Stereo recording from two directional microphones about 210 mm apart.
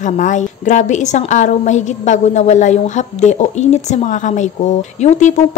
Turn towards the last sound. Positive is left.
turn(degrees=35)  # may be behind; listen again after turning